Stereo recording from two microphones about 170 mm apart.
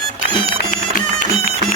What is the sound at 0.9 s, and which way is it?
Music, 50° left (ahead or behind).